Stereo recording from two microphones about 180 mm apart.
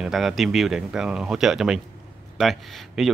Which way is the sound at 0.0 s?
Centre (ahead or behind).